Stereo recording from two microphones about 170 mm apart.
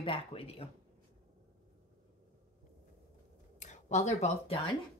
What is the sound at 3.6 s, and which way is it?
Speech, 45° left (ahead or behind).